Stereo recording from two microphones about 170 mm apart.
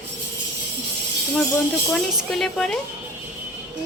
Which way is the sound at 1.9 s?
Centre (ahead or behind).